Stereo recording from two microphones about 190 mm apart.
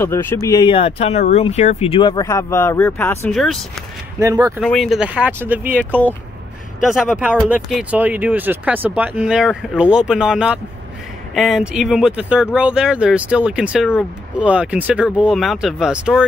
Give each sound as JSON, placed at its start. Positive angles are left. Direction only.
{"t": 0.0, "sound": "speech", "side_deg": 10}
{"t": 4.2, "sound": "speech", "side_deg": -15}
{"t": 4.6, "sound": "speech", "side_deg": 0}